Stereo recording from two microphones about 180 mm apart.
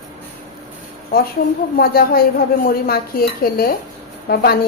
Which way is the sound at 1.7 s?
55° left (ahead or behind).